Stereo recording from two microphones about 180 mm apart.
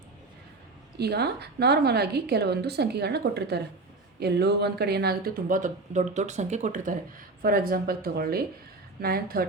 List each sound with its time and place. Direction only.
0.9 s speech: 65° right (ahead or behind)